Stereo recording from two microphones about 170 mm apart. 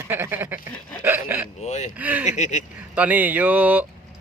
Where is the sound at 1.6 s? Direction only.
40° left (ahead or behind).